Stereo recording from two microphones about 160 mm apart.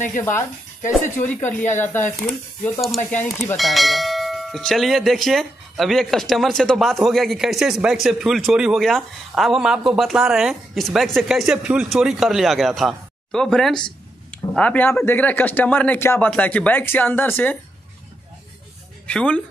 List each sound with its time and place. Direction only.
0.2 s speech: 15° left (ahead or behind)
1.4 s speech: 50° left (ahead or behind)
1.8 s speech: 15° left (ahead or behind)
3.1 s speech: 10° left (ahead or behind)
3.5 s speech: centre (ahead or behind)
19.0 s speech: 10° left (ahead or behind)